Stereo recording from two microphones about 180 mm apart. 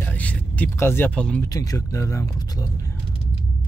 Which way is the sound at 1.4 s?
20° left (ahead or behind).